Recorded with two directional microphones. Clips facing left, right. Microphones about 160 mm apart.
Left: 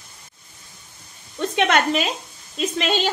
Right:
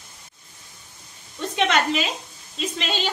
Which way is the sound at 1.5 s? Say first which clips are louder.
Left 2 dB; 50° left (ahead or behind).